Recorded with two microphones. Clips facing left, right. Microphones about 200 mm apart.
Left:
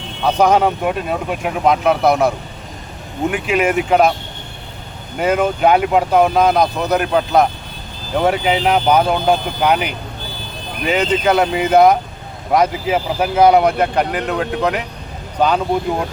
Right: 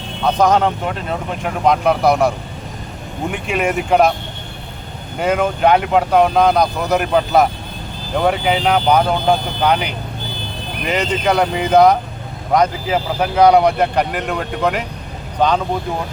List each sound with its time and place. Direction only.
0.3 s speech: 10° left (ahead or behind)
5.2 s speech: 5° left (ahead or behind)
10.9 s speech: 5° left (ahead or behind)